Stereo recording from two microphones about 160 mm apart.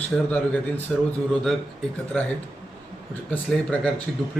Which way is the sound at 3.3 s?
10° left (ahead or behind).